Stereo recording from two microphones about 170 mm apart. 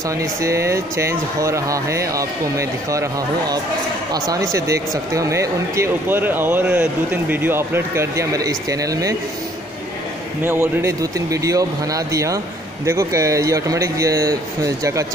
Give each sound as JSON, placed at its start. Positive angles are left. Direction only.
{"t": 0.2, "sound": "speech", "side_deg": -15}
{"t": 10.4, "sound": "speech", "side_deg": -15}